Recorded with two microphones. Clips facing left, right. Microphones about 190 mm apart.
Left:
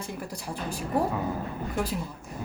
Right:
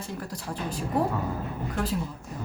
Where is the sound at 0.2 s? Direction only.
10° left (ahead or behind).